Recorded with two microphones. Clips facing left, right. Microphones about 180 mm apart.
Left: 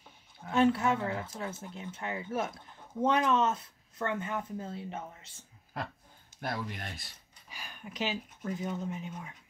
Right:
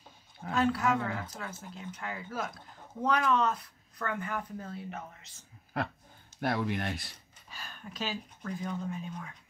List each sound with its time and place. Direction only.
0.5 s speech: 25° left (ahead or behind)
6.4 s speech: 75° right (ahead or behind)
7.4 s speech: 15° left (ahead or behind)